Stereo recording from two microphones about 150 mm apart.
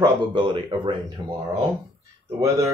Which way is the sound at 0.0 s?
30° right (ahead or behind).